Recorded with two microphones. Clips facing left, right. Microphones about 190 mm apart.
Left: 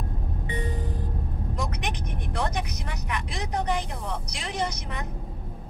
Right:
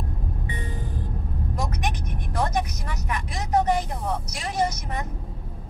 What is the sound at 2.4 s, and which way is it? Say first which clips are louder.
Vehicle: right 6 dB; 40° right (ahead or behind).